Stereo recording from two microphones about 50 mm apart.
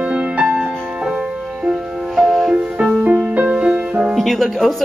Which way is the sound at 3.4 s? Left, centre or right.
Right.